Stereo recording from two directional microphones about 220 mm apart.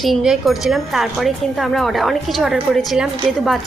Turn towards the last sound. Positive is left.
turn(degrees=0)  # may be behind; listen again after turning